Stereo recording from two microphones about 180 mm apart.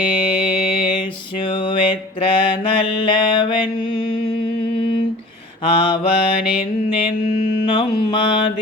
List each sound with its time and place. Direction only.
1.5 s mantra: 25° left (ahead or behind)
5.6 s mantra: 30° left (ahead or behind)
7.6 s mantra: 25° left (ahead or behind)